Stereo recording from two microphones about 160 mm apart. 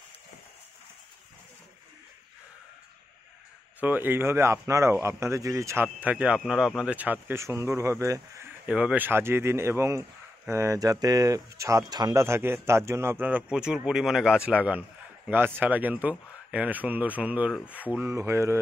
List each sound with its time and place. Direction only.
3.8 s a man's voice: 10° right (ahead or behind)